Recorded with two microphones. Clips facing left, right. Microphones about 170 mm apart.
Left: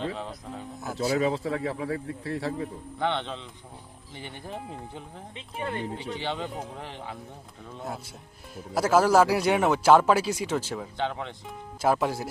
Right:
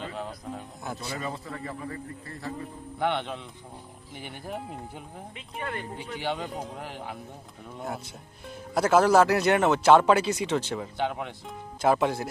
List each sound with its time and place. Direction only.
0.2 s speech: 5° right (ahead or behind)
0.9 s speech: 90° left
3.0 s speech: 10° right (ahead or behind)
5.5 s speech: 20° left (ahead or behind)
6.1 s speech: 10° right (ahead or behind)
8.5 s speech: 5° left (ahead or behind)
10.9 s speech: 10° right (ahead or behind)
11.4 s speech: 5° left (ahead or behind)